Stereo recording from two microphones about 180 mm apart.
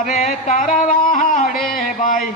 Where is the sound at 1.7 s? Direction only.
50° left (ahead or behind).